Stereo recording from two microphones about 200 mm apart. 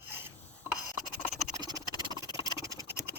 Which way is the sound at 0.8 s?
20° left (ahead or behind).